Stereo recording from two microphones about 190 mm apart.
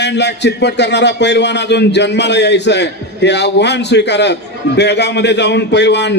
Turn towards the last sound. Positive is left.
turn(degrees=65)  # may be behind; listen again after turning